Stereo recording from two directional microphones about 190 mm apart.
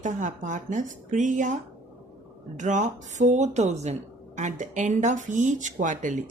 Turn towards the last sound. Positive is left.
turn(degrees=-40)  # may be behind; listen again after turning